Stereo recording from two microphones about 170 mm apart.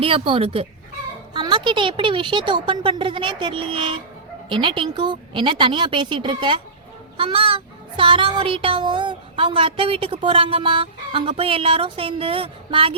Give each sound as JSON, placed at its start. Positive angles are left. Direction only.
{"t": 0.0, "sound": "child singing", "side_deg": -35}
{"t": 1.3, "sound": "a woman's voice", "side_deg": -25}
{"t": 7.2, "sound": "child singing", "side_deg": -30}